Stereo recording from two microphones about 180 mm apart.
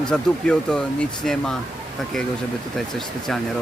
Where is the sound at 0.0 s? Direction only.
5° left (ahead or behind).